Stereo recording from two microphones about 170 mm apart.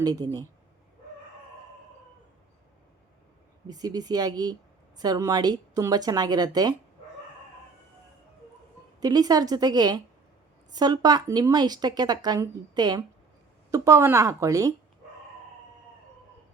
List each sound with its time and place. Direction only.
0.0 s a woman's voice: 20° right (ahead or behind)
3.7 s a woman's voice: 20° right (ahead or behind)
9.0 s a woman's voice: 20° right (ahead or behind)